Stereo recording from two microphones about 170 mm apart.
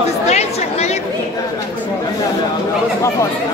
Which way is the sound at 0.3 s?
40° left (ahead or behind).